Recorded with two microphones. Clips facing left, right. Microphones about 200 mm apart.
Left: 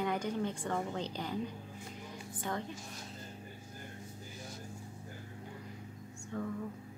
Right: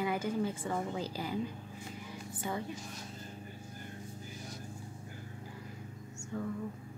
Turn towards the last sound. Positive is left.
turn(degrees=0)  # may be behind; listen again after turning